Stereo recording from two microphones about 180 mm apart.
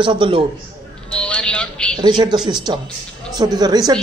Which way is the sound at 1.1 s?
5° left (ahead or behind).